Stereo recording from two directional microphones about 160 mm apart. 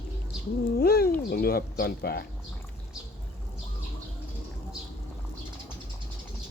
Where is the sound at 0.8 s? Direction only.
75° left (ahead or behind).